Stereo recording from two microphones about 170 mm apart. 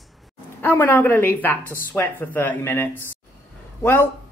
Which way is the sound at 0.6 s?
10° left (ahead or behind).